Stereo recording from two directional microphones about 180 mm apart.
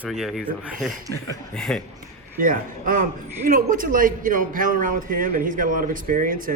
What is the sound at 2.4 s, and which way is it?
A man's voice, 50° right (ahead or behind).